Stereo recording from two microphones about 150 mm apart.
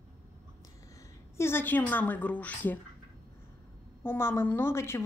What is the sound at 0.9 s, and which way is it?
A woman's voice, 15° left (ahead or behind).